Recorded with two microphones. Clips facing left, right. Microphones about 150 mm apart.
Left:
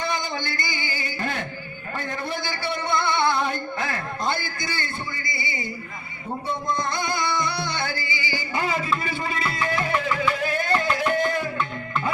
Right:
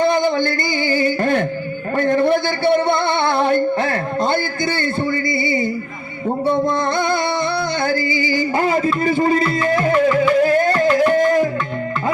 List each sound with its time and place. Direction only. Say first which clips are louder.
0.0 s music: right 12 dB; 55° right (ahead or behind)
2.0 s a sound: right 15 dB; 55° right (ahead or behind)
6.2 s music: right 11 dB; 60° right (ahead or behind); by 11.4 s 45° right (ahead or behind)